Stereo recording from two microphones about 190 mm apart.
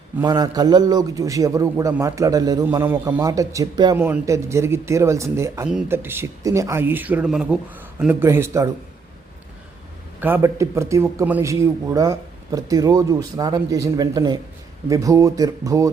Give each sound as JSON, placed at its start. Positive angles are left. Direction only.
{"t": 0.3, "sound": "a man's voice", "side_deg": -20}
{"t": 10.2, "sound": "a man's voice", "side_deg": -10}